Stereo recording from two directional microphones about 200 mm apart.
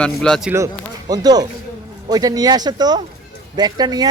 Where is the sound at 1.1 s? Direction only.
20° right (ahead or behind).